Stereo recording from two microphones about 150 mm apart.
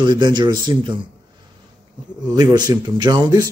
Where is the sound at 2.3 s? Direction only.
25° right (ahead or behind).